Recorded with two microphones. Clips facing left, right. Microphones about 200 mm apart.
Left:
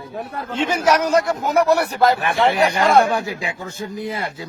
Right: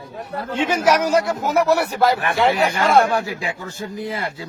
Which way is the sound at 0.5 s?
10° right (ahead or behind).